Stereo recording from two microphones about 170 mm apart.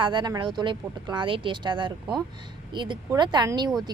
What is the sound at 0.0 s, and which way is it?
A woman's voice, 25° right (ahead or behind).